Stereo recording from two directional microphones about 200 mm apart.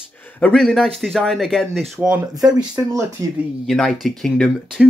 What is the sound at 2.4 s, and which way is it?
Speech, 20° right (ahead or behind).